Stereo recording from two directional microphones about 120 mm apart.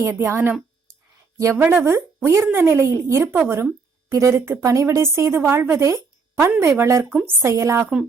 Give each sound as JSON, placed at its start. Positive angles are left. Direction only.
{"t": 0.0, "sound": "a woman's voice", "side_deg": -20}